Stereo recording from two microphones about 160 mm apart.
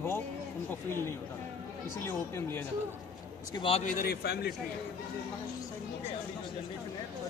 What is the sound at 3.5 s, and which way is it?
Speech, 30° left (ahead or behind).